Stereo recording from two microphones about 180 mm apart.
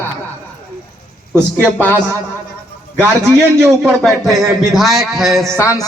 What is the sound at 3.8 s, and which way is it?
A man's voice, centre (ahead or behind).